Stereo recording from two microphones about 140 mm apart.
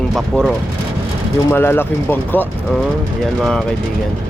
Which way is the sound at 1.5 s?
15° left (ahead or behind).